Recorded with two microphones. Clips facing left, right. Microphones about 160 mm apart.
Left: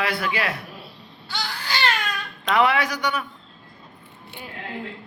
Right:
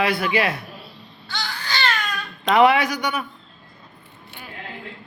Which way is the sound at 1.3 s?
5° left (ahead or behind).